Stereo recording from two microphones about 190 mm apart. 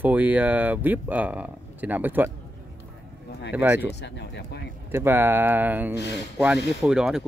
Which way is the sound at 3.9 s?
65° left (ahead or behind).